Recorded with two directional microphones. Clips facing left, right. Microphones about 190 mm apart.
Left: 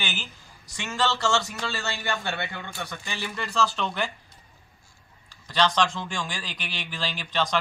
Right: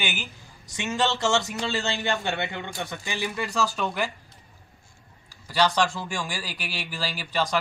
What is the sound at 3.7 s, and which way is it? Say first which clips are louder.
Speech: right 1 dB; 5° right (ahead or behind).